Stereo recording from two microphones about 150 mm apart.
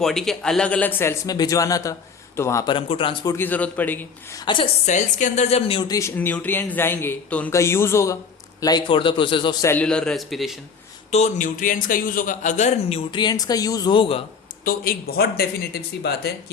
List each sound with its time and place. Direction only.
0.0 s speech: centre (ahead or behind); by 2.6 s 20° left (ahead or behind)
2.6 s a man's voice: 35° left (ahead or behind)
3.2 s speech: 15° left (ahead or behind)
4.4 s a man's voice: 35° left (ahead or behind)
4.9 s a woman's voice: 55° left (ahead or behind)
5.9 s speech: 20° left (ahead or behind)
8.6 s a man's voice: 30° left (ahead or behind)
9.6 s speech: 10° left (ahead or behind)
11.1 s a man's voice: 55° left (ahead or behind)
13.1 s speech: 30° left (ahead or behind)
14.6 s speech: 80° left